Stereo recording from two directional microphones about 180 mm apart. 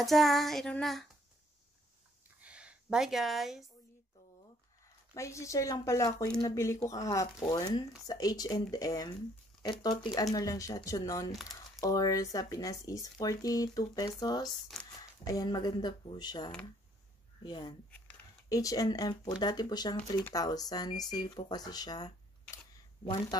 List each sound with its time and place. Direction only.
0.0 s child singing: centre (ahead or behind)
2.4 s a sound: 5° right (ahead or behind)
5.1 s speech: 15° left (ahead or behind)
14.4 s child singing: centre (ahead or behind)
15.0 s speech: 20° left (ahead or behind)